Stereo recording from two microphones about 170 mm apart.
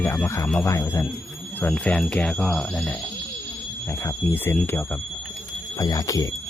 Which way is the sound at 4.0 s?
15° left (ahead or behind).